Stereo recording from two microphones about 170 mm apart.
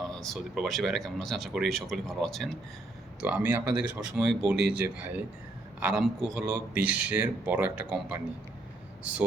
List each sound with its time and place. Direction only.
0.0 s speech: centre (ahead or behind)